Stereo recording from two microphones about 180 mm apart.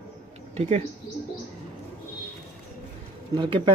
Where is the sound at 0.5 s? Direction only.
35° right (ahead or behind).